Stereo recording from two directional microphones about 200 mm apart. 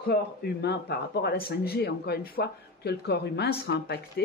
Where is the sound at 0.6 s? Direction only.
55° left (ahead or behind).